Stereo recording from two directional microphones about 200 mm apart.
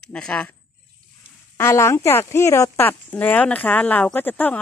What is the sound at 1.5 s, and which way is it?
Speech, 15° left (ahead or behind).